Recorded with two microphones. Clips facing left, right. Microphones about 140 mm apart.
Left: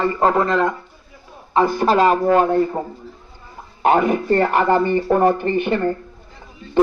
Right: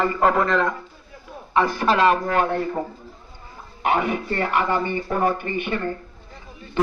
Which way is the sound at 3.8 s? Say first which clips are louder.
Left 6 dB; 40° left (ahead or behind).